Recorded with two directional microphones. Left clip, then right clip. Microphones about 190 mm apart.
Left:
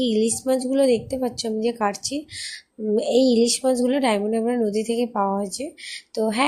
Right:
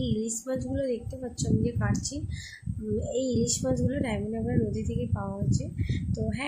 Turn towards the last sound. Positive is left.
turn(degrees=40)  # may be behind; listen again after turning